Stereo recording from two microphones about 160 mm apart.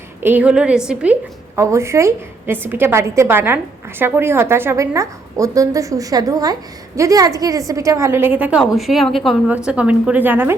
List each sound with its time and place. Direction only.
0.2 s a woman's voice: 10° right (ahead or behind)